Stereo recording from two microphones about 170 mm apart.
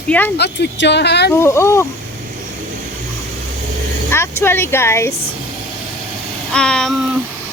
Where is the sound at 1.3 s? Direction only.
15° left (ahead or behind).